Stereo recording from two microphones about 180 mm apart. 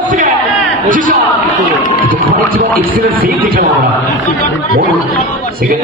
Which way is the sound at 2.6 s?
50° right (ahead or behind).